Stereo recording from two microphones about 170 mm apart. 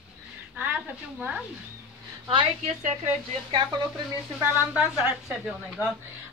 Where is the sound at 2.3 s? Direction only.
35° right (ahead or behind).